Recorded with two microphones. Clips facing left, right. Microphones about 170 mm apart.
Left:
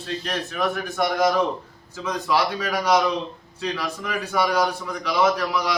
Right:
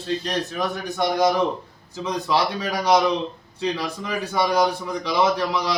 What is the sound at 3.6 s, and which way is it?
A man's voice, 25° right (ahead or behind).